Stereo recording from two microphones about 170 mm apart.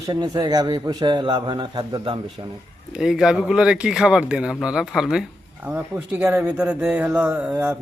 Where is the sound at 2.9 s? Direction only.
5° right (ahead or behind).